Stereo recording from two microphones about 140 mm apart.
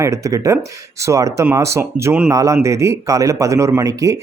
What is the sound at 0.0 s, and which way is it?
Speech, 20° right (ahead or behind).